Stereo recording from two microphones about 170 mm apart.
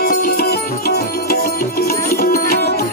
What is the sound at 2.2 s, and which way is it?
Music, 65° left (ahead or behind).